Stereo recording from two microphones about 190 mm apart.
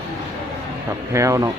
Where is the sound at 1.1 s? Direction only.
15° right (ahead or behind).